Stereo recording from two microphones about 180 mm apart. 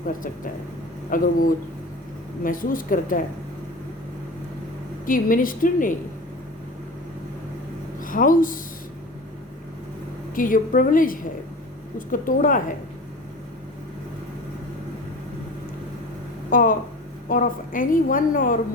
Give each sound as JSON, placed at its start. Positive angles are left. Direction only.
{"t": 1.1, "sound": "a woman's voice", "side_deg": 50}
{"t": 5.0, "sound": "a woman's voice", "side_deg": 50}
{"t": 8.0, "sound": "speech", "side_deg": 50}
{"t": 10.3, "sound": "a woman's voice", "side_deg": 50}
{"t": 16.5, "sound": "a woman's voice", "side_deg": 50}